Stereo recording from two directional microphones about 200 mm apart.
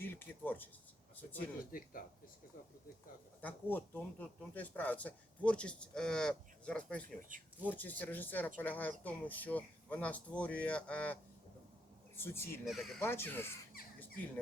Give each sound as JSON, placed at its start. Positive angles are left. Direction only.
{"t": 0.0, "sound": "speech", "side_deg": 10}
{"t": 1.7, "sound": "speech", "side_deg": 45}
{"t": 3.4, "sound": "speech", "side_deg": 10}
{"t": 7.2, "sound": "speech", "side_deg": -40}
{"t": 7.7, "sound": "speech", "side_deg": 10}
{"t": 12.6, "sound": "speech", "side_deg": 0}
{"t": 13.0, "sound": "speech", "side_deg": 10}